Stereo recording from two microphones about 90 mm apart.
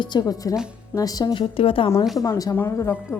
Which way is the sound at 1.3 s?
90° left.